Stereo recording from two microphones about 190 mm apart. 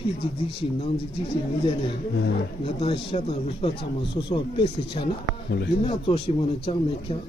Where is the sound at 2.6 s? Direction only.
30° left (ahead or behind).